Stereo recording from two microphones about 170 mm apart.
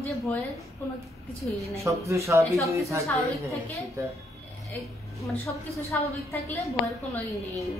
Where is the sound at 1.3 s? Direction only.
15° right (ahead or behind).